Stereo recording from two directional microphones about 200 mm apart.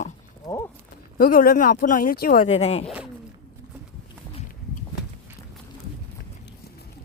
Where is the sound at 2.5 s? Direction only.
30° left (ahead or behind).